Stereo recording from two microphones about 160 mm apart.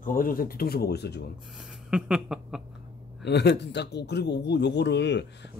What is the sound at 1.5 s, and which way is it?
Speech, 5° right (ahead or behind).